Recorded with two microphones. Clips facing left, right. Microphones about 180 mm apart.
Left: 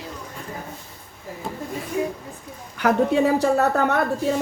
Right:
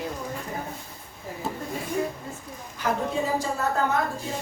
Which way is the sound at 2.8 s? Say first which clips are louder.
Left 8 dB; 70° left (ahead or behind).